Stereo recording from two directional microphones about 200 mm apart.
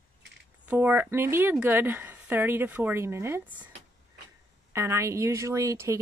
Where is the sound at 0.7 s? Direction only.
10° right (ahead or behind).